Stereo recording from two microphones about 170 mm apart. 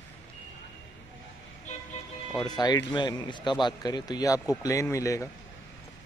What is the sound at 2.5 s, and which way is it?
Speech, 25° left (ahead or behind).